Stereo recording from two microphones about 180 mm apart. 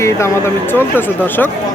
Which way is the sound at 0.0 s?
15° left (ahead or behind).